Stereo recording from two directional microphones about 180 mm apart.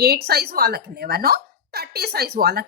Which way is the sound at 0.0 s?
60° right (ahead or behind).